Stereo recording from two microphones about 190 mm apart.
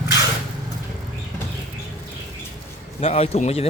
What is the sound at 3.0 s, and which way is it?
Speech, 35° left (ahead or behind).